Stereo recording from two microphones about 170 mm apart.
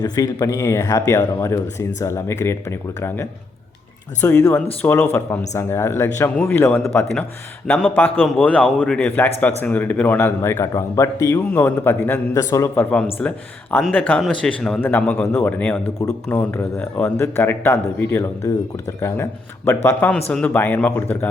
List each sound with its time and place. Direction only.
0.0 s a man's voice: 20° left (ahead or behind)